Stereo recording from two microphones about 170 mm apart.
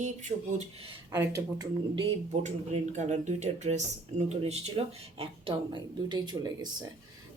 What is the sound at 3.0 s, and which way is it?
A woman's voice, 45° right (ahead or behind).